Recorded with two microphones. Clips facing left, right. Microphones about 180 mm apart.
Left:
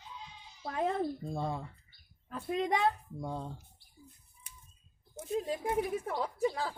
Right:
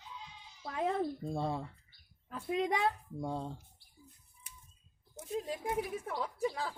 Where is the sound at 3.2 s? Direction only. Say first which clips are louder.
Right 1 dB; 30° right (ahead or behind).